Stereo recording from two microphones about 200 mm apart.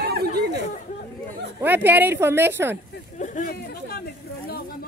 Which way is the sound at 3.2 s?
40° left (ahead or behind).